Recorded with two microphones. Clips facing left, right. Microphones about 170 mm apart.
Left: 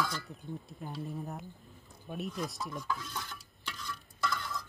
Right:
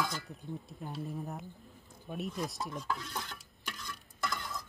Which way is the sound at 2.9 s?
60° right (ahead or behind).